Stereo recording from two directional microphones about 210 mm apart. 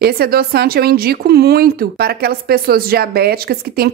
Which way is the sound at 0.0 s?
45° right (ahead or behind).